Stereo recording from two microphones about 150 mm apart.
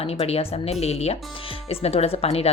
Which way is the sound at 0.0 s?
40° left (ahead or behind).